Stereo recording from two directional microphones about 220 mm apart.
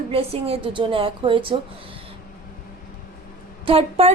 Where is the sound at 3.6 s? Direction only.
25° right (ahead or behind).